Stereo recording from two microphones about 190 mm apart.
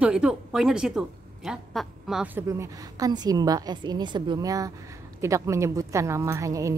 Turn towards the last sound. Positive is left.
turn(degrees=-15)  # may be behind; listen again after turning